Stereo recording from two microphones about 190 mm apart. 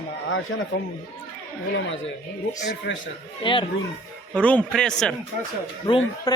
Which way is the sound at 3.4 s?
25° left (ahead or behind).